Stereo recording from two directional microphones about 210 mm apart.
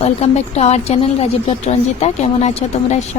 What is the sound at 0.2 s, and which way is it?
A woman's voice, 30° left (ahead or behind).